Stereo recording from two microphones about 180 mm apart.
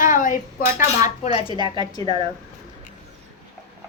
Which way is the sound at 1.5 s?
25° right (ahead or behind).